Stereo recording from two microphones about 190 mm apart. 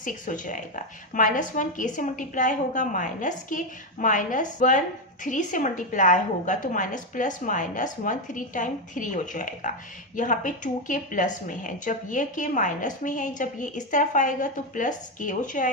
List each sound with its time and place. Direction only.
0.0 s a woman's voice: 45° left (ahead or behind)